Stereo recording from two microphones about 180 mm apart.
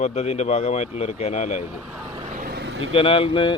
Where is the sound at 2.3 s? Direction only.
55° right (ahead or behind); by 2.9 s 85° right.